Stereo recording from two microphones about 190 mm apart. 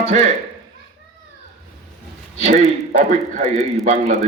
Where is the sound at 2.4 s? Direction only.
35° right (ahead or behind).